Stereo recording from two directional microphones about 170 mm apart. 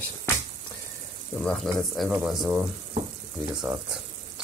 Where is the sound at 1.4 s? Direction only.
5° left (ahead or behind).